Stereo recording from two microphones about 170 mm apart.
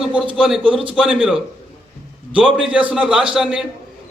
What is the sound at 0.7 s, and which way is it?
Speech, 30° right (ahead or behind).